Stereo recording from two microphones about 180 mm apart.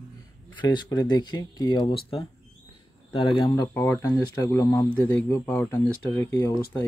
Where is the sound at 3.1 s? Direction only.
30° left (ahead or behind).